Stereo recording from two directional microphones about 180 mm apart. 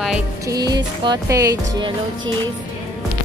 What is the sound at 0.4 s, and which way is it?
Music, 20° right (ahead or behind).